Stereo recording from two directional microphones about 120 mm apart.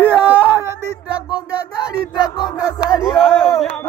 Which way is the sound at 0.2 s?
15° right (ahead or behind).